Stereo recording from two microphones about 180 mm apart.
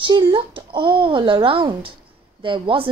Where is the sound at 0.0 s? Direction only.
30° right (ahead or behind).